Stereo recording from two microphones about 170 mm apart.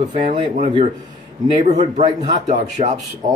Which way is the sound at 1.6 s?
45° right (ahead or behind).